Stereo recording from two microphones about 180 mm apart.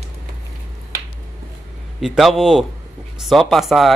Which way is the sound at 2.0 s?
Centre (ahead or behind).